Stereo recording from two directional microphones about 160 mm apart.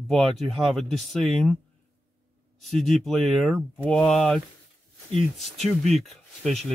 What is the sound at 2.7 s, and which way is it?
Speech, centre (ahead or behind).